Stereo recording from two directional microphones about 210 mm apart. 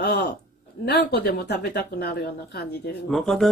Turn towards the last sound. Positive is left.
turn(degrees=0)  # may be behind; listen again after turning